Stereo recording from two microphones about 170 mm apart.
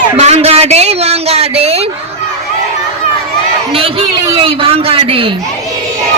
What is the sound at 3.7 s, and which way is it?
A man's voice, 35° right (ahead or behind).